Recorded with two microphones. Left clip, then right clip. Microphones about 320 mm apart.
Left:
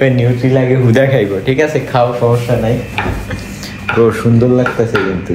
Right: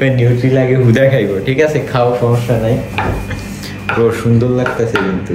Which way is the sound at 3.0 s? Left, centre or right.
Centre.